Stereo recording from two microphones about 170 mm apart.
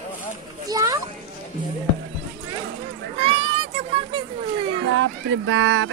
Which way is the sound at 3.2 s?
35° right (ahead or behind).